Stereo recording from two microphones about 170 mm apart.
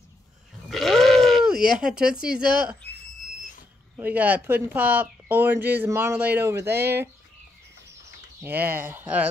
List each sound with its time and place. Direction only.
0.7 s bleat: centre (ahead or behind)
2.8 s a sound: 75° left (ahead or behind)
3.9 s speech: 10° right (ahead or behind)
8.4 s speech: 10° right (ahead or behind)